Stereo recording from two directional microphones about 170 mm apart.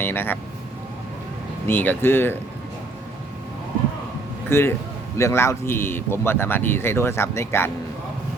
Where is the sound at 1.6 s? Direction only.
10° left (ahead or behind).